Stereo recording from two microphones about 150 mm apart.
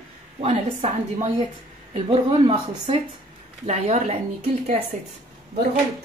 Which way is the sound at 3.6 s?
50° right (ahead or behind).